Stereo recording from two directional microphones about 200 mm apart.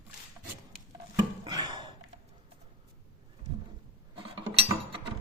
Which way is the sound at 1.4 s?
20° right (ahead or behind).